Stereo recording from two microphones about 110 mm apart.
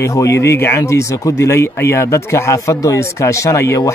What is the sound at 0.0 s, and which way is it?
Speech, 25° left (ahead or behind).